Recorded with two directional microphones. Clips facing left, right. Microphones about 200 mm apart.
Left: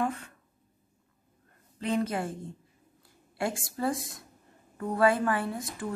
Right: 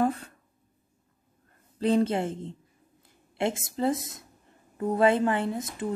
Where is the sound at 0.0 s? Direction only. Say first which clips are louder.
Right 5 dB; 35° right (ahead or behind).